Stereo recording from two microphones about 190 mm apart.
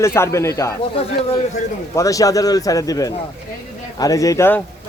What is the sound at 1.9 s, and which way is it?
Speech, 15° left (ahead or behind).